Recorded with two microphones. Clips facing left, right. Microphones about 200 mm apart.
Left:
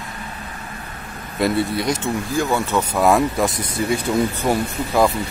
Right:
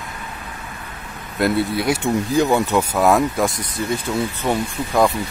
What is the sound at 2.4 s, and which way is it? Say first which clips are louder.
Speech: right 4 dB; 20° right (ahead or behind).